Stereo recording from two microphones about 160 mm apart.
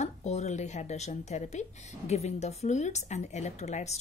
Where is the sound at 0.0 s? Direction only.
45° left (ahead or behind).